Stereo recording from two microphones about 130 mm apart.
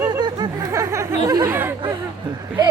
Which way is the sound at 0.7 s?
20° right (ahead or behind).